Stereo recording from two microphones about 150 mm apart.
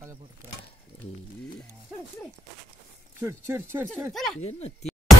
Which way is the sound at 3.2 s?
15° right (ahead or behind).